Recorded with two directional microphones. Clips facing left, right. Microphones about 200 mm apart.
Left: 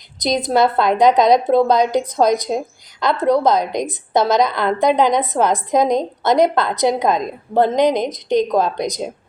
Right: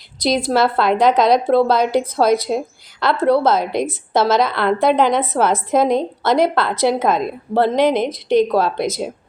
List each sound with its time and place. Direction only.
0.2 s a woman's voice: 20° left (ahead or behind)